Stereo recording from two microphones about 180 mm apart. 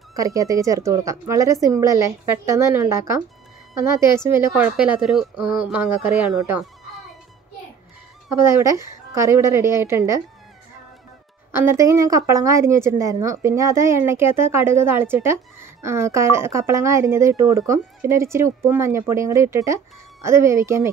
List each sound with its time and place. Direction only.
0.1 s a woman's voice: 20° right (ahead or behind)
8.4 s a woman's voice: 15° right (ahead or behind)
11.5 s a woman's voice: 15° right (ahead or behind)